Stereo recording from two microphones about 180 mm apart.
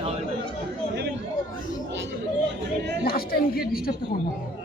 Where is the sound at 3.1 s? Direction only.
55° left (ahead or behind).